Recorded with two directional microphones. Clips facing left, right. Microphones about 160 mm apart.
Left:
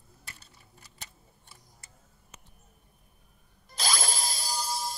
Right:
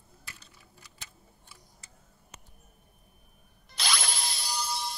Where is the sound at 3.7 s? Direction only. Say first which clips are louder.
Left 2 dB; 45° left (ahead or behind).